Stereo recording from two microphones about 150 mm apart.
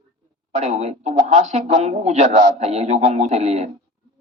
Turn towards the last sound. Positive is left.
turn(degrees=-45)  # may be behind; listen again after turning